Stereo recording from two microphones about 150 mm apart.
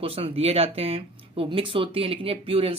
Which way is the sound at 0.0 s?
40° right (ahead or behind).